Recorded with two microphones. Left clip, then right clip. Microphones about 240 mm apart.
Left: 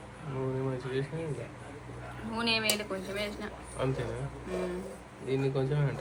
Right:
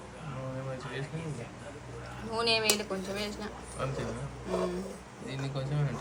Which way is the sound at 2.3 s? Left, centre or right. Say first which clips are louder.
Right 2 dB; centre.